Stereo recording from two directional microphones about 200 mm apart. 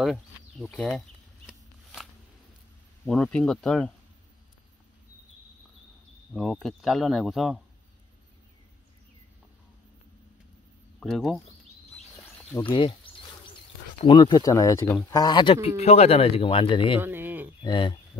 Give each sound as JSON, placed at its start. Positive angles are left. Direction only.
{"t": 0.0, "sound": "a sound", "side_deg": 0}
{"t": 3.1, "sound": "speech", "side_deg": 5}
{"t": 6.3, "sound": "speech", "side_deg": 0}
{"t": 11.0, "sound": "speech", "side_deg": 0}
{"t": 12.6, "sound": "a sound", "side_deg": 25}
{"t": 14.0, "sound": "speech", "side_deg": 20}
{"t": 17.0, "sound": "speech", "side_deg": -10}
{"t": 17.6, "sound": "speech", "side_deg": 25}